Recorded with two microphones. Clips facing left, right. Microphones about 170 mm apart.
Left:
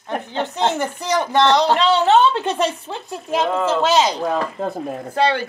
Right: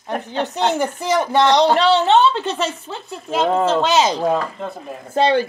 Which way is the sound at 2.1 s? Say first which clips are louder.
Even; 10° left (ahead or behind).